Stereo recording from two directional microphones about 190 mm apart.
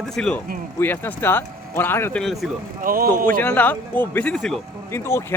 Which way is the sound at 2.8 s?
50° right (ahead or behind).